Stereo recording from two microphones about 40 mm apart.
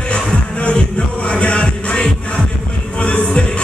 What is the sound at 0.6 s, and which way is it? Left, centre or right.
Music, left.